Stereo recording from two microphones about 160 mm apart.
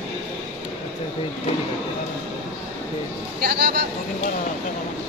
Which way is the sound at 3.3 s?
80° right.